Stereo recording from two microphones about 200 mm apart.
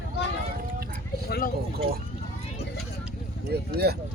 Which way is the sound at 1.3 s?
50° left (ahead or behind).